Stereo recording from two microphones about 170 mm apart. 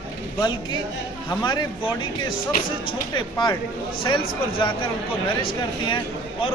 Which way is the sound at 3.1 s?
25° left (ahead or behind).